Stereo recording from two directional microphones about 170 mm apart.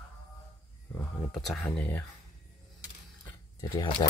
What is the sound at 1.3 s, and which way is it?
Speech, centre (ahead or behind).